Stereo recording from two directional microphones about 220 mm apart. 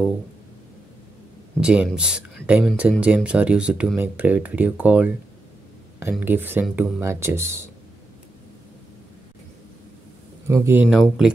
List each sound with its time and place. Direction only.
1.6 s speech: 5° right (ahead or behind)
10.4 s speech: 10° right (ahead or behind)